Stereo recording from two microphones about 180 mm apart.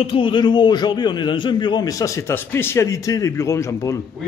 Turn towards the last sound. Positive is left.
turn(degrees=15)  # may be behind; listen again after turning